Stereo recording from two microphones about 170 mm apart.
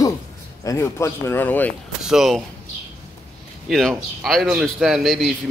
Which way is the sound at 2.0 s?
5° right (ahead or behind).